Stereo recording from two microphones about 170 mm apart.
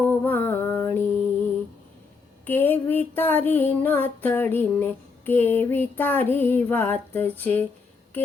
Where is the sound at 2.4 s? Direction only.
10° left (ahead or behind).